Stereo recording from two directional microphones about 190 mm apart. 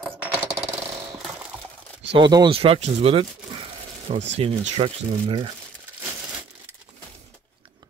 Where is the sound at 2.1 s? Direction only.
25° right (ahead or behind).